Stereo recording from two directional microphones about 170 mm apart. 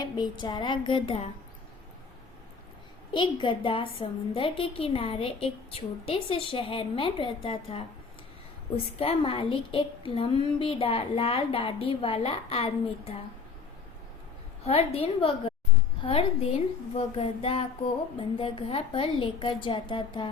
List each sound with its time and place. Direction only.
0.0 s a woman's voice: 25° left (ahead or behind)
3.1 s a woman's voice: 30° left (ahead or behind)
14.6 s a woman's voice: 35° left (ahead or behind)